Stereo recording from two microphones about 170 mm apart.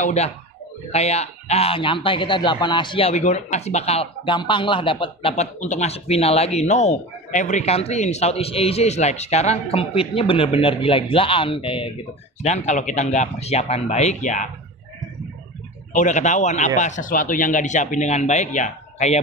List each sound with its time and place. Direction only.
0.0 s a man's voice: 40° left (ahead or behind)
12.4 s speech: 45° left (ahead or behind)
15.9 s speech: 45° left (ahead or behind)